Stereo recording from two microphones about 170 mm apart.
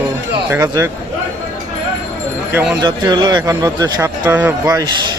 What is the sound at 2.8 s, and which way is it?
Speech, 25° right (ahead or behind).